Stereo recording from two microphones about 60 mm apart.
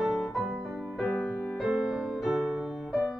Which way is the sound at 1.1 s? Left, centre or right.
Left.